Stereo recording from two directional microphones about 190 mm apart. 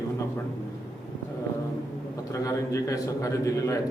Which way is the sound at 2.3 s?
15° left (ahead or behind).